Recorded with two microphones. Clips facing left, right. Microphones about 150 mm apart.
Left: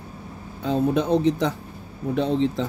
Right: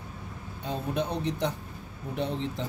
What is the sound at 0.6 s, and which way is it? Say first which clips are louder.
Speech: left 10 dB; 90° left.